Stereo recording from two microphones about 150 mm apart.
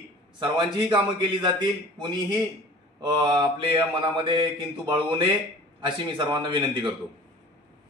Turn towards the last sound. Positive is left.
turn(degrees=-30)  # may be behind; listen again after turning